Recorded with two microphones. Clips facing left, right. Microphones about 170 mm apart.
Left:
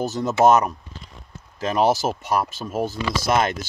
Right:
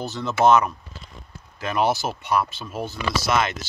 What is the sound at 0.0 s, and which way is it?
Speech, 40° left (ahead or behind).